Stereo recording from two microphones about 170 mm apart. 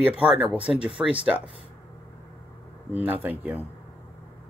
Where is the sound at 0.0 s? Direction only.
10° right (ahead or behind).